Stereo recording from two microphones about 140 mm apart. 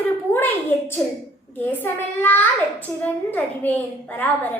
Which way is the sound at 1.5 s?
15° left (ahead or behind).